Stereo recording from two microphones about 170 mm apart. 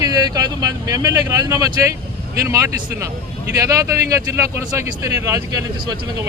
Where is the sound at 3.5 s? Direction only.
20° right (ahead or behind).